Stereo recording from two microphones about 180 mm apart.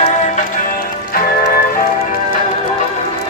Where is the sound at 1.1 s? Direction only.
55° left (ahead or behind).